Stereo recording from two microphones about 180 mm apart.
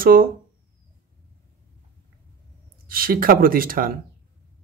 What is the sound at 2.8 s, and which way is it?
Speech, 55° right (ahead or behind).